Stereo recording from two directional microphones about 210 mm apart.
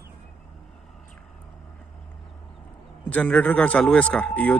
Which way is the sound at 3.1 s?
5° left (ahead or behind).